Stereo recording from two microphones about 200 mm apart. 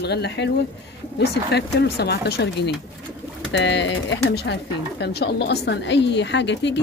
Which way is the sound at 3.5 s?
60° left (ahead or behind).